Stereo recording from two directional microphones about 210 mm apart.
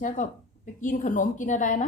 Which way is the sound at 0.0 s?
40° left (ahead or behind).